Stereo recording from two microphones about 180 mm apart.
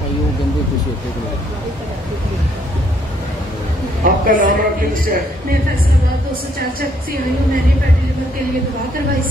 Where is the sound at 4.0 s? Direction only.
50° right (ahead or behind).